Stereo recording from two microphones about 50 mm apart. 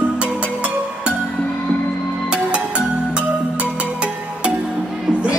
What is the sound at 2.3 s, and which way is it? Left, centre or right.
Music, right.